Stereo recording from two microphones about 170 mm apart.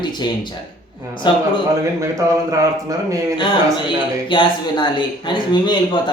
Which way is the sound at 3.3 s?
30° left (ahead or behind).